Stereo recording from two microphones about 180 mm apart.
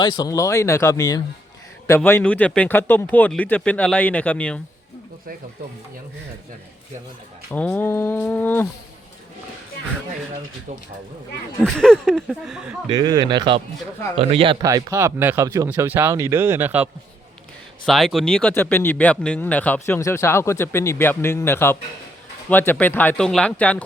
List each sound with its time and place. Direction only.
0.0 s speech: 20° left (ahead or behind)
7.5 s speech: 10° left (ahead or behind)
11.6 s speech: 5° left (ahead or behind)
12.9 s speech: 25° right (ahead or behind)
17.8 s speech: centre (ahead or behind)